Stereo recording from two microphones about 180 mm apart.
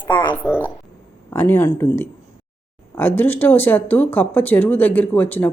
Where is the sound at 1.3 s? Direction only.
10° left (ahead or behind).